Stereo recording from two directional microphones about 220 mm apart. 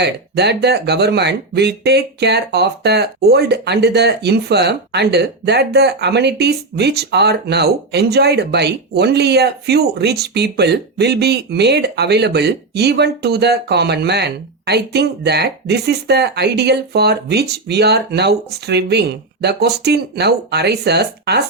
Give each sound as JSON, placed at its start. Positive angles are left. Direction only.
{"t": 0.0, "sound": "speech", "side_deg": -50}